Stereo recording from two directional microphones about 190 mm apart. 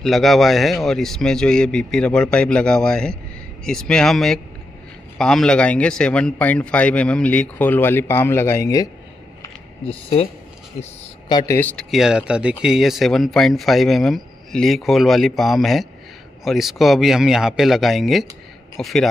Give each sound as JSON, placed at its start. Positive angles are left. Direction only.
{"t": 0.0, "sound": "a man's voice", "side_deg": 0}
{"t": 9.8, "sound": "speech", "side_deg": 30}
{"t": 11.2, "sound": "a man's voice", "side_deg": 20}
{"t": 11.9, "sound": "speech", "side_deg": -5}